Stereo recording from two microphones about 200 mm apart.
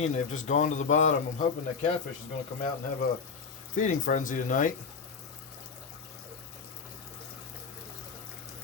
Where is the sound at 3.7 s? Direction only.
40° left (ahead or behind).